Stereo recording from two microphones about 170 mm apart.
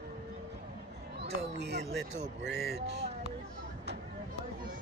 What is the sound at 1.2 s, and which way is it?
Speech, 90° right.